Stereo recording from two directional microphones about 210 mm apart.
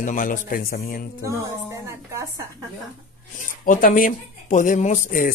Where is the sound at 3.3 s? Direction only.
40° left (ahead or behind).